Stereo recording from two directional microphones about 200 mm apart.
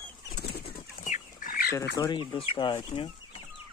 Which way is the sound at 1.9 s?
20° left (ahead or behind).